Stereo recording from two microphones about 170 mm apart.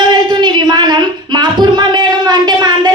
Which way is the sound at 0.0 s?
25° right (ahead or behind).